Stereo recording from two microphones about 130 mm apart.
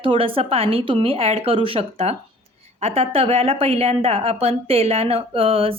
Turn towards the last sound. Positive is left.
turn(degrees=-45)  # may be behind; listen again after turning